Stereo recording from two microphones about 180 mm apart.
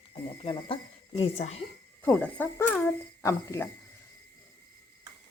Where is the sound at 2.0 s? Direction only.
5° left (ahead or behind).